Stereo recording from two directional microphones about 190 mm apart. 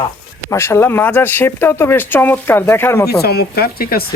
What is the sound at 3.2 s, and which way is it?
Speech, 55° left (ahead or behind).